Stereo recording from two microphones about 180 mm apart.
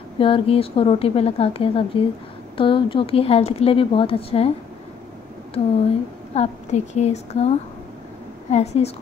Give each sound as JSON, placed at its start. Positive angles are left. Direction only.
{"t": 0.2, "sound": "a woman's voice", "side_deg": 30}
{"t": 5.6, "sound": "a woman's voice", "side_deg": 35}